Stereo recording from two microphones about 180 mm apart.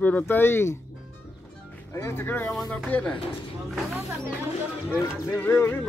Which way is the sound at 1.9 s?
15° left (ahead or behind).